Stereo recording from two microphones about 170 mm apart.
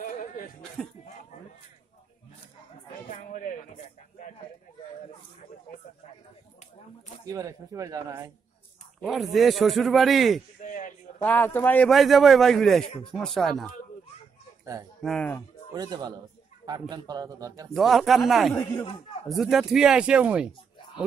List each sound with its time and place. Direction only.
0.0 s chuckle: 55° left (ahead or behind)
3.1 s a sound: 50° left (ahead or behind)
7.2 s speech: 20° right (ahead or behind)
9.0 s a man's voice: centre (ahead or behind)
10.6 s a sound: 50° left (ahead or behind)
11.2 s a man's voice: 10° left (ahead or behind)
15.0 s speech: 5° left (ahead or behind)
15.7 s speech: 25° right (ahead or behind)
17.7 s a man's voice: centre (ahead or behind)
18.5 s speech: 15° left (ahead or behind)
19.2 s a man's voice: centre (ahead or behind)